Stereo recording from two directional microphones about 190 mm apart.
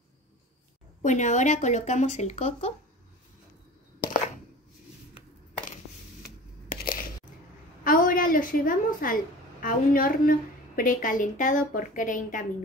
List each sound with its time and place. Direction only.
1.0 s speech: 40° left (ahead or behind)
6.7 s a sound: 45° left (ahead or behind)
7.8 s a woman's voice: 45° left (ahead or behind)